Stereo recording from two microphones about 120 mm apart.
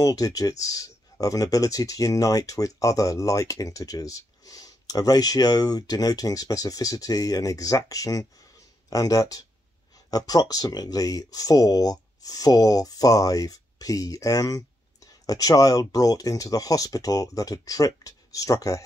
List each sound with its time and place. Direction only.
0.0 s speech: 30° left (ahead or behind)